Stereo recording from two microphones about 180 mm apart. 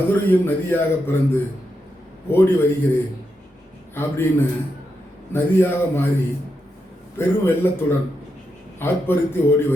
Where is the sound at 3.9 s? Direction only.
15° left (ahead or behind).